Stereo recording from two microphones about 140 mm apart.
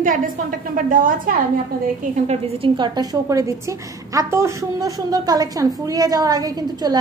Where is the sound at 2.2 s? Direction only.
45° right (ahead or behind).